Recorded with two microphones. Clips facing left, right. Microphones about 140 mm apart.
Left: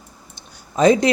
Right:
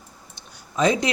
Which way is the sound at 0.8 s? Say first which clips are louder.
Left 6 dB; 40° left (ahead or behind).